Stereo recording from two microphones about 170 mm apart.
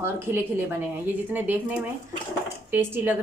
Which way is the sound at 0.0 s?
15° right (ahead or behind).